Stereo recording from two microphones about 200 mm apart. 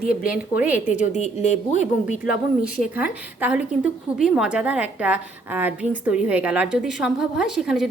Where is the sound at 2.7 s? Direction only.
5° right (ahead or behind).